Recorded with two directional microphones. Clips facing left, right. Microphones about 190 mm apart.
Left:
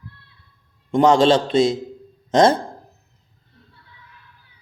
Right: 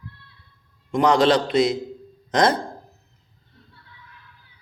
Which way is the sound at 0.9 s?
30° left (ahead or behind).